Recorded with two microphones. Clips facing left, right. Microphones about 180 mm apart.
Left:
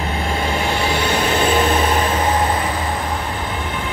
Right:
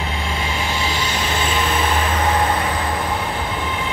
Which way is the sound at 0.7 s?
60° left (ahead or behind).